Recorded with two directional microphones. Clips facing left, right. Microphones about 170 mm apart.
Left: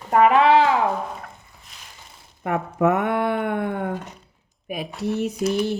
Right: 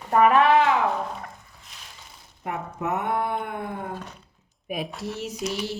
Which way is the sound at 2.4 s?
70° left (ahead or behind).